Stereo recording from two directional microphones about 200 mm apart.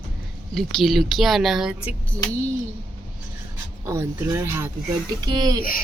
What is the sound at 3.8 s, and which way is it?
Speech, 15° right (ahead or behind).